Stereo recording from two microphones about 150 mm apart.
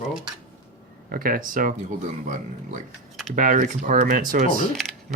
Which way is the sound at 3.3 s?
60° right (ahead or behind).